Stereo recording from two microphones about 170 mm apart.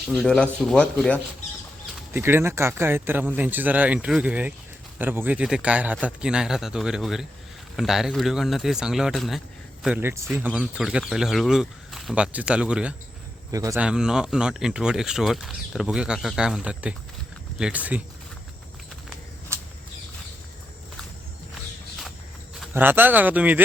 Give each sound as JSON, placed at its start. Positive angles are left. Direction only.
{"t": 0.1, "sound": "speech", "side_deg": 0}
{"t": 2.1, "sound": "speech", "side_deg": -15}
{"t": 9.8, "sound": "speech", "side_deg": -10}
{"t": 13.5, "sound": "speech", "side_deg": -20}
{"t": 13.7, "sound": "speech", "side_deg": -5}
{"t": 22.7, "sound": "speech", "side_deg": -10}